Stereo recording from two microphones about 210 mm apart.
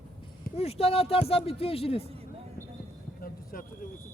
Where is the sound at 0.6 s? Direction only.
30° left (ahead or behind).